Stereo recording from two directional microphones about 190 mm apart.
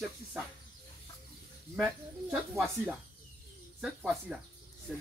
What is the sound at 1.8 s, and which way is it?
Speech, 5° right (ahead or behind).